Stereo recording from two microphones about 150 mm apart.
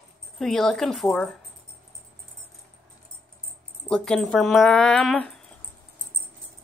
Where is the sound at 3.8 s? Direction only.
5° left (ahead or behind).